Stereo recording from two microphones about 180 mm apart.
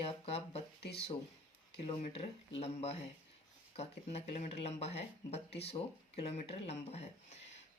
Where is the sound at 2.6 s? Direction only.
35° left (ahead or behind).